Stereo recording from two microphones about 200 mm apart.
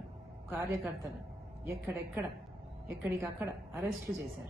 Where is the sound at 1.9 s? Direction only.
15° right (ahead or behind).